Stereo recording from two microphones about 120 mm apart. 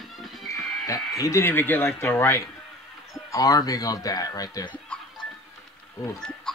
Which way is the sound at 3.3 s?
30° left (ahead or behind).